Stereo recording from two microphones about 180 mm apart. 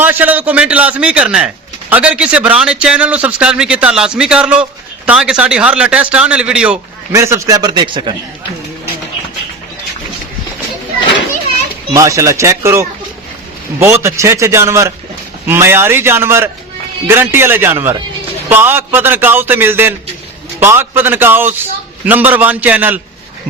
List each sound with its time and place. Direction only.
0.0 s a man's voice: 10° right (ahead or behind); by 8.1 s 25° right (ahead or behind)
11.9 s speech: 15° right (ahead or behind)